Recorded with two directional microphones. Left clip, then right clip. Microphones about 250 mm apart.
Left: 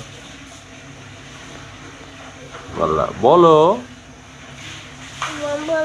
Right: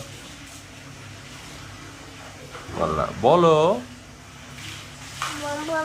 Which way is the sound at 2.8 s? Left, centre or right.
Centre.